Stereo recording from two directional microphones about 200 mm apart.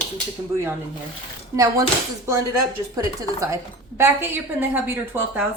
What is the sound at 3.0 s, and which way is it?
A woman's voice, 15° right (ahead or behind).